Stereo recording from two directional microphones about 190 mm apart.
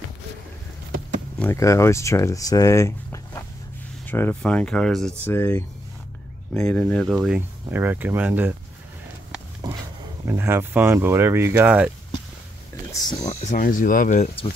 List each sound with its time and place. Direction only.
1.4 s speech: 15° left (ahead or behind); by 8.5 s 10° right (ahead or behind)
10.2 s speech: 10° right (ahead or behind)
13.3 s speech: 40° left (ahead or behind)